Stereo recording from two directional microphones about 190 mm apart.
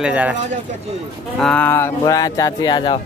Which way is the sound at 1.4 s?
5° left (ahead or behind).